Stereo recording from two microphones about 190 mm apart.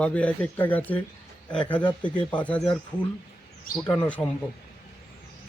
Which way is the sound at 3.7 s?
50° left (ahead or behind).